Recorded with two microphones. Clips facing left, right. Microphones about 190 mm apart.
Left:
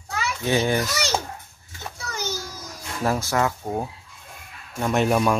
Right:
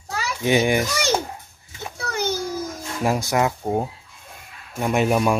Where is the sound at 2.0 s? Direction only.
60° right (ahead or behind).